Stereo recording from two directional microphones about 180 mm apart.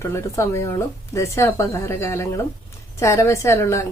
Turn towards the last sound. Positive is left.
turn(degrees=15)  # may be behind; listen again after turning